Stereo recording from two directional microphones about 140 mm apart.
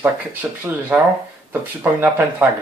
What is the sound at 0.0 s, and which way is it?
Speech, 10° right (ahead or behind).